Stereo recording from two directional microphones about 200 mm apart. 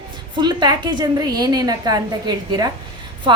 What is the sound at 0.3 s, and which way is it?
A woman's voice, 20° right (ahead or behind).